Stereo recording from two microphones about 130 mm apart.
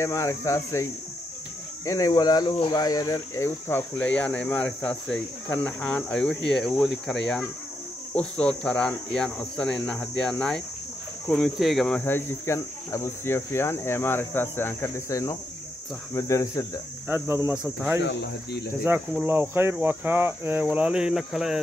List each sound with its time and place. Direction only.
0.0 s speech: 25° left (ahead or behind)
1.9 s speech: 30° left (ahead or behind); by 12.0 s centre (ahead or behind)
12.0 s speech: 20° left (ahead or behind)
17.1 s speech: 15° right (ahead or behind)
17.6 s speech: 5° right (ahead or behind)
19.2 s speech: 15° right (ahead or behind)